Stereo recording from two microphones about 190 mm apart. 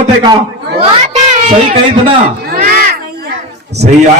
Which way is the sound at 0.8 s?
35° right (ahead or behind).